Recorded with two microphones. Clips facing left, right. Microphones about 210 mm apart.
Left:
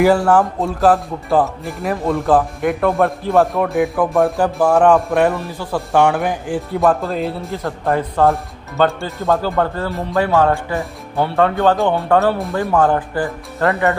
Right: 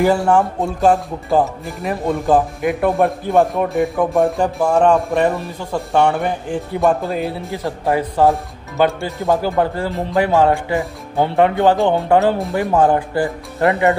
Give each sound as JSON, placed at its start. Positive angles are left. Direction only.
{"t": 0.0, "sound": "speech", "side_deg": 0}
{"t": 5.8, "sound": "speech", "side_deg": 5}
{"t": 7.8, "sound": "speech", "side_deg": -15}